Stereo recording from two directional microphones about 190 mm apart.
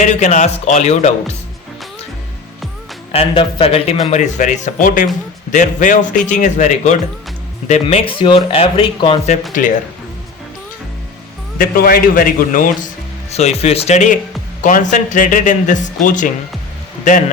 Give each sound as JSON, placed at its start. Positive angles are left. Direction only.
{"t": 0.0, "sound": "a man's voice", "side_deg": 40}
{"t": 3.1, "sound": "a man's voice", "side_deg": 30}
{"t": 9.5, "sound": "a man's voice", "side_deg": 40}
{"t": 11.5, "sound": "a man's voice", "side_deg": 50}
{"t": 13.3, "sound": "a man's voice", "side_deg": 35}